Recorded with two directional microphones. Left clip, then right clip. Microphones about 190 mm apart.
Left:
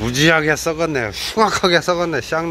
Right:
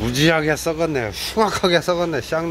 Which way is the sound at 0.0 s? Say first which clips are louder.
Left 3 dB; 5° left (ahead or behind).